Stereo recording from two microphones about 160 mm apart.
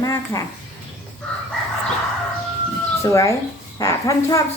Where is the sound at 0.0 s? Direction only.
20° left (ahead or behind).